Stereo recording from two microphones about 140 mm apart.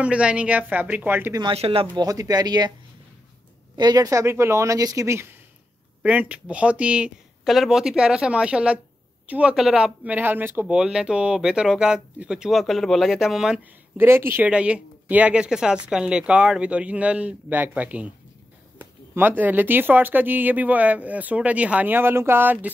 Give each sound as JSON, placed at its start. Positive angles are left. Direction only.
{"t": 0.0, "sound": "speech", "side_deg": -10}
{"t": 1.5, "sound": "speech", "side_deg": -40}
{"t": 2.0, "sound": "speech", "side_deg": -25}
{"t": 3.7, "sound": "speech", "side_deg": -30}
{"t": 13.9, "sound": "speech", "side_deg": -15}